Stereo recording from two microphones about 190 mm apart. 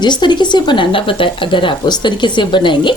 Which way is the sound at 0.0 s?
25° left (ahead or behind).